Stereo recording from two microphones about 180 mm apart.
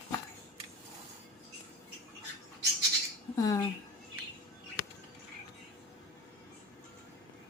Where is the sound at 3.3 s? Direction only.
20° left (ahead or behind).